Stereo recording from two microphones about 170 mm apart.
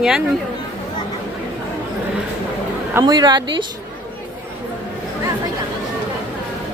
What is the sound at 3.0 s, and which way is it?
Speech, 25° right (ahead or behind).